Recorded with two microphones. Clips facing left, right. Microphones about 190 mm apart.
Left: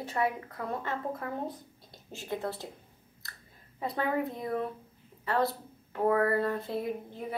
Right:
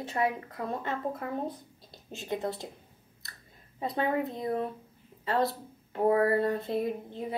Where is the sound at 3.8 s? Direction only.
20° right (ahead or behind).